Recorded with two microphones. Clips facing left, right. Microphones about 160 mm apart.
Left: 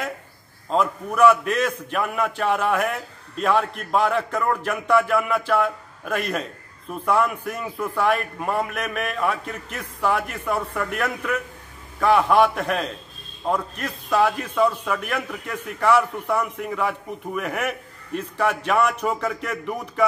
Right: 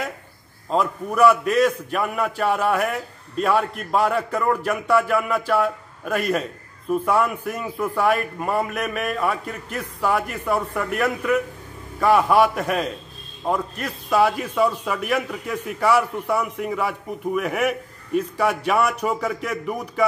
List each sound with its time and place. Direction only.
0.7 s a man's voice: centre (ahead or behind)